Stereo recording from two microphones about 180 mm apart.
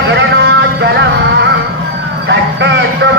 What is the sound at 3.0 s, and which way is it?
Speech, 90° right.